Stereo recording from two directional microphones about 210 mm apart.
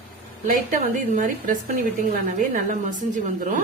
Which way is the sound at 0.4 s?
40° right (ahead or behind).